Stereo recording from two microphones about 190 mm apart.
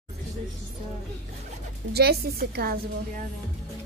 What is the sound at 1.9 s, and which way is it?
Speech, 55° right (ahead or behind).